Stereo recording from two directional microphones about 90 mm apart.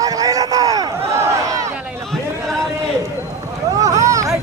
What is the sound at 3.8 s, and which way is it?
Vehicle, 35° right (ahead or behind).